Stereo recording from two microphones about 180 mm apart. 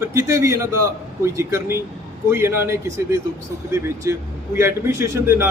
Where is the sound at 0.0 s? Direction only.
15° right (ahead or behind).